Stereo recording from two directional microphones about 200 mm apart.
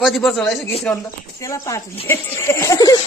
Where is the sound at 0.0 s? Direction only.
Centre (ahead or behind); by 3.0 s 15° left (ahead or behind).